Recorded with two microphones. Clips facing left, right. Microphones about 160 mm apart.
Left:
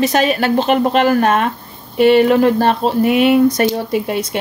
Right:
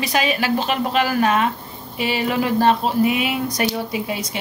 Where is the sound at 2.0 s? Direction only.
60° left (ahead or behind).